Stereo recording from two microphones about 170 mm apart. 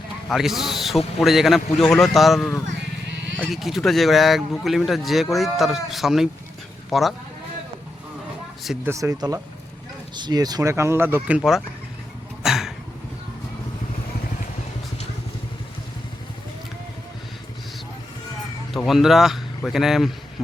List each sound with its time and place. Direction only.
0.3 s speech: centre (ahead or behind)
8.6 s speech: 5° right (ahead or behind)
8.9 s speech: 20° right (ahead or behind)
12.4 s a sound: centre (ahead or behind)
18.9 s speech: centre (ahead or behind)